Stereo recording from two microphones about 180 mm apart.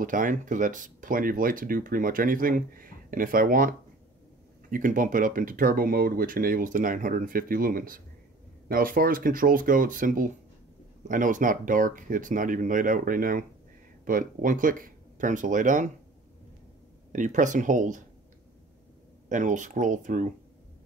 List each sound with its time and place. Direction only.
0.0 s speech: 45° right (ahead or behind)
17.1 s speech: 45° right (ahead or behind)
19.2 s speech: 45° right (ahead or behind)